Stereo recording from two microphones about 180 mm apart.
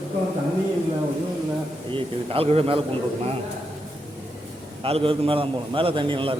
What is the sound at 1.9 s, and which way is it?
Speech, 30° right (ahead or behind).